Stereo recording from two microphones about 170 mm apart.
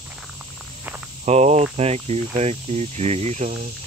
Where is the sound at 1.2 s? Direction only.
40° right (ahead or behind).